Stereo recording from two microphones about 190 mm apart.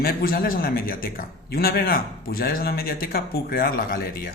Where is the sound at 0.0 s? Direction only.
50° left (ahead or behind).